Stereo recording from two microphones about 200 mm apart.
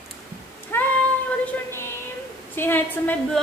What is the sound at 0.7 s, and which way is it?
Child singing, 10° left (ahead or behind).